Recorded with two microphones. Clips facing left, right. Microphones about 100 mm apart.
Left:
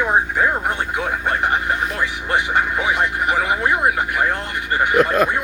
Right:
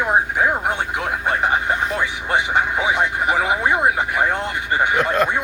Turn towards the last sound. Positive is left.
turn(degrees=-25)  # may be behind; listen again after turning